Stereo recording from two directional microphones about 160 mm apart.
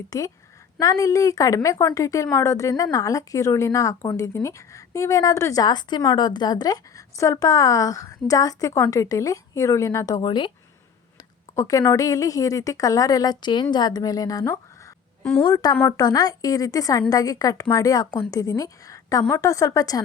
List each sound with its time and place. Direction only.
0.1 s a woman's voice: 20° left (ahead or behind)
11.5 s a woman's voice: 20° left (ahead or behind)